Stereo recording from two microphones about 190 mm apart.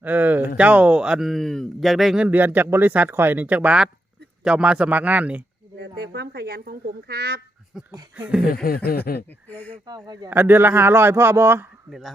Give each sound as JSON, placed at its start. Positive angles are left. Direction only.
{"t": 0.0, "sound": "a man's voice", "side_deg": -10}
{"t": 5.8, "sound": "speech", "side_deg": -60}
{"t": 7.7, "sound": "a man's voice", "side_deg": 0}
{"t": 8.6, "sound": "speech", "side_deg": 50}
{"t": 9.5, "sound": "speech", "side_deg": 10}
{"t": 9.8, "sound": "a man's voice", "side_deg": -20}
{"t": 11.9, "sound": "speech", "side_deg": 0}